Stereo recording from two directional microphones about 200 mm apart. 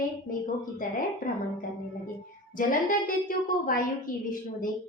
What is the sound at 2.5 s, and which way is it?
A woman's voice, 45° left (ahead or behind).